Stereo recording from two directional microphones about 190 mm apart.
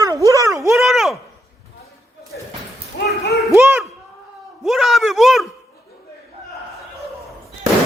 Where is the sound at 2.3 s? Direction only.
60° left (ahead or behind).